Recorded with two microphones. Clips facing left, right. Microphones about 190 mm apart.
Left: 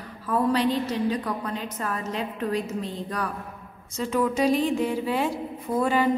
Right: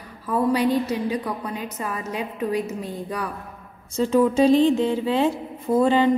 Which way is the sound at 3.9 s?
30° right (ahead or behind).